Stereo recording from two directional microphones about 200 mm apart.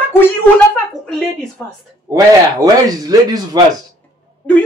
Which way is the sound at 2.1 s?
15° right (ahead or behind).